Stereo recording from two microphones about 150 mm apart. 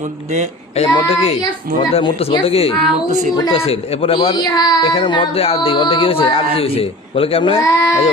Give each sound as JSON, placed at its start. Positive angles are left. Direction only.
{"t": 0.9, "sound": "speech", "side_deg": 40}
{"t": 7.6, "sound": "speech", "side_deg": 20}